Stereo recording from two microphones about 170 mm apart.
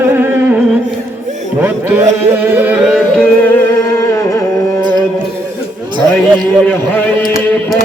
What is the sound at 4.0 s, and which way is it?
Music, 15° left (ahead or behind).